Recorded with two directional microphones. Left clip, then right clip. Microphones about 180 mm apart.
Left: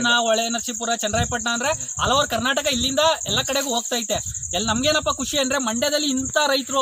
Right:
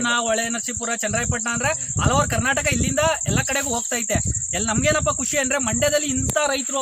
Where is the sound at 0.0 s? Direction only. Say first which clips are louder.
Left 2 dB; 15° right (ahead or behind).